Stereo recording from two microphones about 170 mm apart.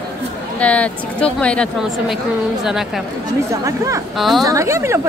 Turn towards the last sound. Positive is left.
turn(degrees=-15)  # may be behind; listen again after turning